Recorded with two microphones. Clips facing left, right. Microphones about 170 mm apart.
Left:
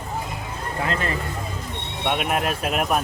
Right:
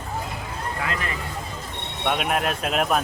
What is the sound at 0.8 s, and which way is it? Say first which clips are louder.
Speech: left 5 dB; 30° left (ahead or behind).